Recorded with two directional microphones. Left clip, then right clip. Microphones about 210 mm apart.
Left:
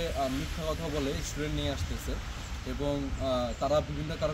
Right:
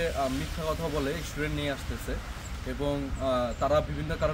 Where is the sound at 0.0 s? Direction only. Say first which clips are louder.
Right 3 dB; 5° right (ahead or behind).